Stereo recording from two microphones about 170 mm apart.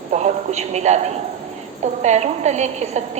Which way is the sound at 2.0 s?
40° right (ahead or behind).